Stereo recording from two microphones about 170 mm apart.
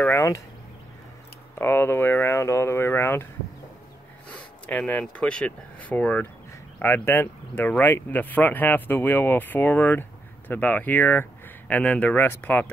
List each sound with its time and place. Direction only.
0.0 s speech: 15° left (ahead or behind)
1.5 s speech: 15° left (ahead or behind)
4.4 s speech: 10° left (ahead or behind)